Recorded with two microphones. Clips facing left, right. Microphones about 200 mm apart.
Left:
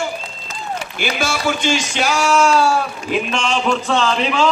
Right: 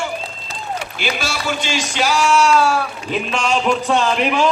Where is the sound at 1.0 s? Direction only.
50° left (ahead or behind); by 2.8 s 30° left (ahead or behind).